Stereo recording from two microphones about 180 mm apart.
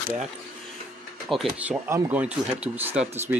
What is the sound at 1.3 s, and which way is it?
Speech, 5° right (ahead or behind).